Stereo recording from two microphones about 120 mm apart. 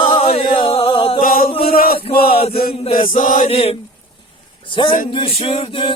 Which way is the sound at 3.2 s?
90° left.